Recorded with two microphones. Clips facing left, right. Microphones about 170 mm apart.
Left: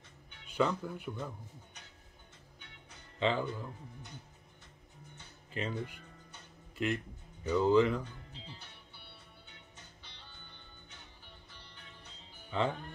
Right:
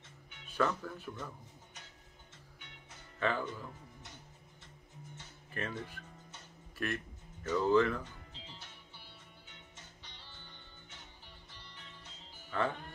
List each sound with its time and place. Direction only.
0.5 s speech: 15° left (ahead or behind)
3.2 s speech: 20° left (ahead or behind)
5.5 s speech: 15° left (ahead or behind)
12.4 s music: 20° left (ahead or behind)